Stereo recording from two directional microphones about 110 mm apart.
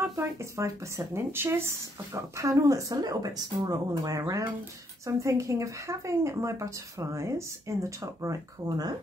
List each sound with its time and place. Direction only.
0.0 s speech: 25° right (ahead or behind)